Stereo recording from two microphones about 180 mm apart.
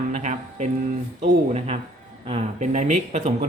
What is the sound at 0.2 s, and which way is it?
Music, 40° right (ahead or behind).